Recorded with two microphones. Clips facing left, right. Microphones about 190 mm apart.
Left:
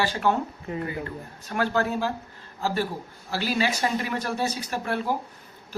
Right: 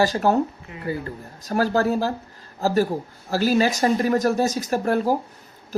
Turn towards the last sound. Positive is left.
turn(degrees=-40)  # may be behind; listen again after turning